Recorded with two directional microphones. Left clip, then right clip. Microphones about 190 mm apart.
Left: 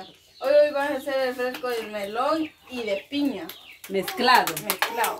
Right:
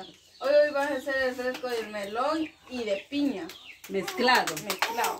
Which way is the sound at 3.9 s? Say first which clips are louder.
Left 4 dB; 60° left (ahead or behind).